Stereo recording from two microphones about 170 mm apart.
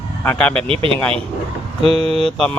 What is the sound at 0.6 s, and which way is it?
Speech, 30° right (ahead or behind).